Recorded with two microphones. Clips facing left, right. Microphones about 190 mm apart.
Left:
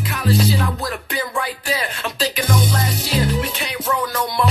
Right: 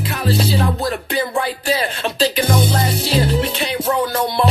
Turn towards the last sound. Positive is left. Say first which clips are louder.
# right 3 dB
turn(degrees=-30)  # may be behind; listen again after turning